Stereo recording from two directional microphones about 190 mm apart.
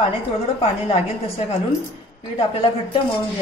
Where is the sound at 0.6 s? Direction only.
30° left (ahead or behind).